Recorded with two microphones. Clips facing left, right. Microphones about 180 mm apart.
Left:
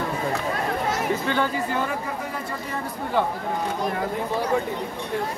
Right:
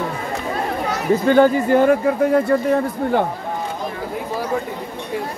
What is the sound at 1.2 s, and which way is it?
Speech, 45° right (ahead or behind).